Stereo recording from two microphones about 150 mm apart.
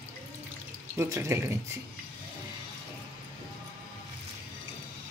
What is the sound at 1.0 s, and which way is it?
Speech, 20° right (ahead or behind).